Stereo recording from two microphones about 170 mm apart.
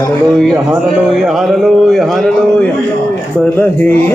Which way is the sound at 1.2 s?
Centre (ahead or behind).